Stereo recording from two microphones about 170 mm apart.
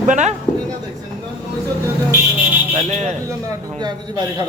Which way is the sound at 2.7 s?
40° right (ahead or behind).